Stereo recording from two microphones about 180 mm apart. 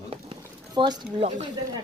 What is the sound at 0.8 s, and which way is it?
Speech, 25° right (ahead or behind).